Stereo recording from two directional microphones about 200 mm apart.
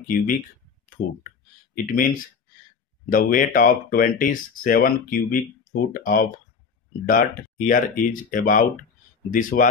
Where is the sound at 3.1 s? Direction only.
45° left (ahead or behind).